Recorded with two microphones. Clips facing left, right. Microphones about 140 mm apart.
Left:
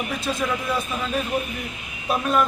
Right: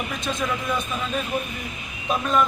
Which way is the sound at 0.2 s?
5° left (ahead or behind).